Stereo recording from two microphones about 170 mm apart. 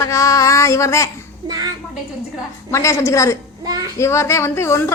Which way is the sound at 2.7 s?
15° left (ahead or behind).